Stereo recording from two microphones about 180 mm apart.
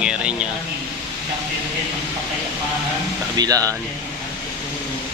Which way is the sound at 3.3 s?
20° right (ahead or behind).